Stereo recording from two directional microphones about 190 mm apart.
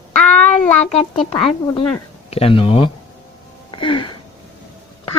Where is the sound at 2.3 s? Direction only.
30° left (ahead or behind).